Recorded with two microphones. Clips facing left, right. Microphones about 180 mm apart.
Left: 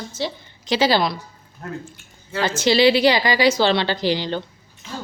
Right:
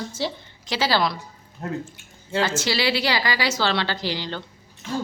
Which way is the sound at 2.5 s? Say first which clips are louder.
Left 8 dB; 20° left (ahead or behind).